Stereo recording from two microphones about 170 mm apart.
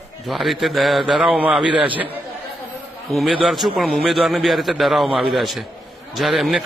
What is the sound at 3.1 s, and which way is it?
A man's voice, centre (ahead or behind).